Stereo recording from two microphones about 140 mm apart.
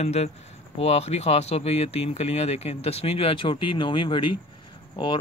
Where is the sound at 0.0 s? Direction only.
50° left (ahead or behind).